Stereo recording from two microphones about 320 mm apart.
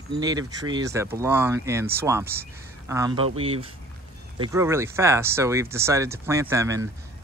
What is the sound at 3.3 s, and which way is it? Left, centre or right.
Speech, right.